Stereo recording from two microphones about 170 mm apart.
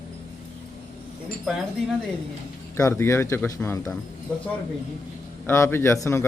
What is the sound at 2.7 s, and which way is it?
A man's voice, 15° left (ahead or behind).